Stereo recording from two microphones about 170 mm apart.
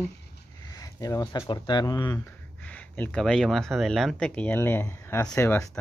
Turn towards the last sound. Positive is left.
turn(degrees=15)  # may be behind; listen again after turning